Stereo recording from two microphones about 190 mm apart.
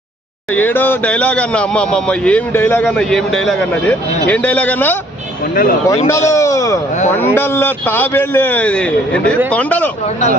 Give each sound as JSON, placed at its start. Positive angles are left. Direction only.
{"t": 0.5, "sound": "a man's voice", "side_deg": 10}
{"t": 6.1, "sound": "a man's voice", "side_deg": 15}